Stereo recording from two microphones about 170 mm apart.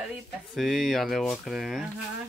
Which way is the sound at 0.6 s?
Centre (ahead or behind).